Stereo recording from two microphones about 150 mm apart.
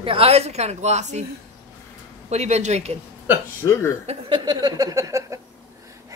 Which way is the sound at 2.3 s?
50° right (ahead or behind).